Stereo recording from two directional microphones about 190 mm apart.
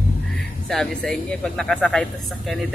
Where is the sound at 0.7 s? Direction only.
Centre (ahead or behind).